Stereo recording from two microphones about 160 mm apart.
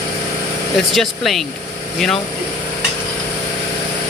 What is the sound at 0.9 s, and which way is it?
Speech, centre (ahead or behind).